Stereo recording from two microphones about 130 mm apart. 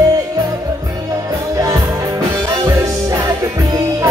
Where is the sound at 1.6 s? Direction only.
25° right (ahead or behind).